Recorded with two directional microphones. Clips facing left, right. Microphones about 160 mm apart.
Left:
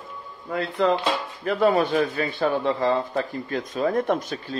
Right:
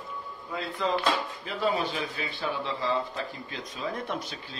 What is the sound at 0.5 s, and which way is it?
A man's voice, 65° left (ahead or behind).